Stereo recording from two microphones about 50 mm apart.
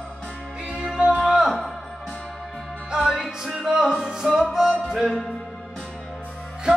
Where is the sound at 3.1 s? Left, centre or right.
Centre.